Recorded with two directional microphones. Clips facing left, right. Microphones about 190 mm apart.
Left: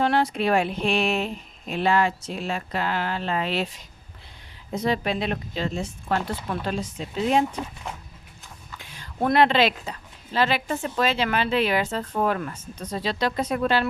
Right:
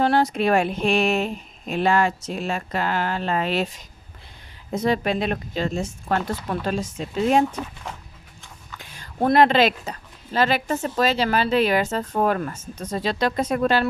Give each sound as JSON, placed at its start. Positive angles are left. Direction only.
{"t": 0.0, "sound": "speech", "side_deg": -40}
{"t": 9.2, "sound": "speech", "side_deg": -40}